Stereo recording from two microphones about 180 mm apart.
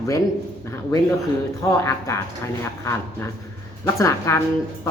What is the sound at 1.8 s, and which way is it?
Speech, 15° left (ahead or behind).